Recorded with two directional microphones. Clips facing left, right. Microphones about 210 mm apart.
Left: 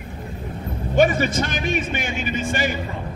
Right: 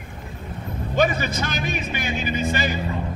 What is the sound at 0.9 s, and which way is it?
A man's voice, 50° left (ahead or behind).